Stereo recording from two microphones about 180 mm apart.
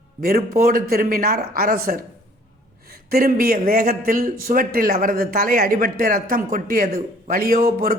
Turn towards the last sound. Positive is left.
turn(degrees=-50)  # may be behind; listen again after turning